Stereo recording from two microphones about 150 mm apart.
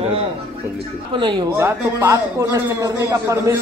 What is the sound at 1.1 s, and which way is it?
Speech, 30° right (ahead or behind).